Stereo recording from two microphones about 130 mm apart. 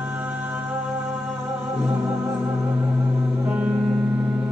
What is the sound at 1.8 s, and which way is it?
Music, 20° right (ahead or behind).